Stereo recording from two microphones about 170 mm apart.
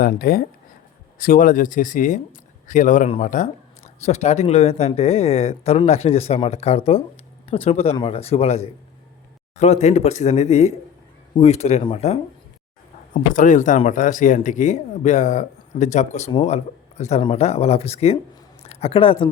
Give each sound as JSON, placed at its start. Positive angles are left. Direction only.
{"t": 0.0, "sound": "speech", "side_deg": 60}
{"t": 13.3, "sound": "speech", "side_deg": 50}